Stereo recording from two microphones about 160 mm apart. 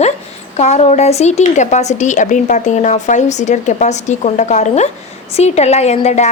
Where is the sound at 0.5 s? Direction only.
45° left (ahead or behind).